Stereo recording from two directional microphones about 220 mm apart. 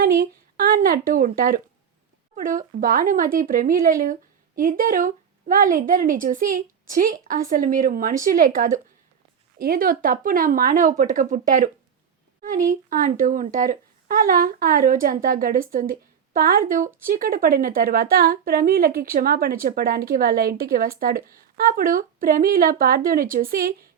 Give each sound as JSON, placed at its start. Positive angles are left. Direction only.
{"t": 0.0, "sound": "speech", "side_deg": -40}
{"t": 12.9, "sound": "speech", "side_deg": -40}